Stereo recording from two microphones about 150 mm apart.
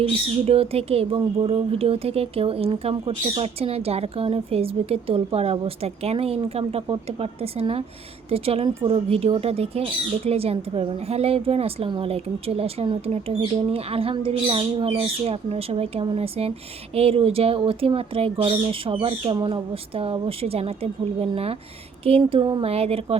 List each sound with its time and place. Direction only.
0.0 s a woman's voice: 40° right (ahead or behind)